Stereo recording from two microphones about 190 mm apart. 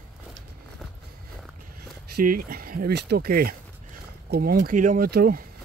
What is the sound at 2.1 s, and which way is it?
Speech, 50° right (ahead or behind).